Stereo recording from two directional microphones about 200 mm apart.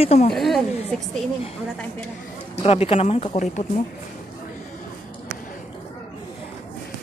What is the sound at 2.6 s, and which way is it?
Speech, 30° left (ahead or behind).